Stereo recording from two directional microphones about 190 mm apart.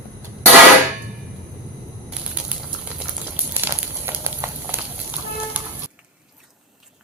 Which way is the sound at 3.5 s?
10° right (ahead or behind).